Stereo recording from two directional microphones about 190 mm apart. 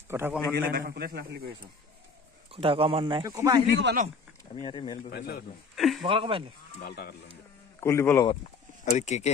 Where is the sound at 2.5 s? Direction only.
30° right (ahead or behind).